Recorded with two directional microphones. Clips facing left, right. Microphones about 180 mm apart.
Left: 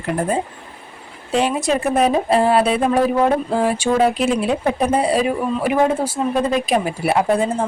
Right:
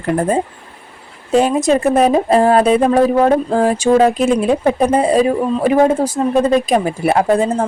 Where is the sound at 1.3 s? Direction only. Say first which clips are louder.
Right 5 dB; 40° right (ahead or behind).